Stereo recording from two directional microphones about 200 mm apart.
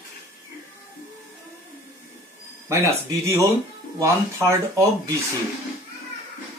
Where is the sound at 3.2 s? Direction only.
15° right (ahead or behind).